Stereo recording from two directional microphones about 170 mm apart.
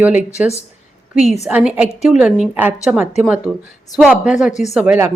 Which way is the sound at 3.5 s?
5° left (ahead or behind).